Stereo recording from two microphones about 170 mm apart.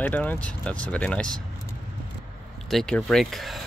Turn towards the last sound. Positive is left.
turn(degrees=0)  # may be behind; listen again after turning